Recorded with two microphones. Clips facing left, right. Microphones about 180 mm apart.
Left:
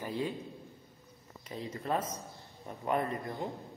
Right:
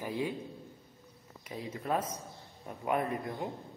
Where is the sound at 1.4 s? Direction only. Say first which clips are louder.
Even; 5° right (ahead or behind).